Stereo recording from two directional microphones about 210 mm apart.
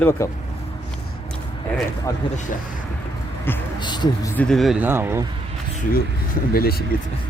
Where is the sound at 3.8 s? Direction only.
20° left (ahead or behind).